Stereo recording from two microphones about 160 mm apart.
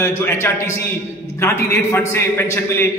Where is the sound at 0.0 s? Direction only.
15° left (ahead or behind).